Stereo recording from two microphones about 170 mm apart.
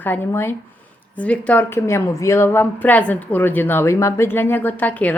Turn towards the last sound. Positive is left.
turn(degrees=10)  # may be behind; listen again after turning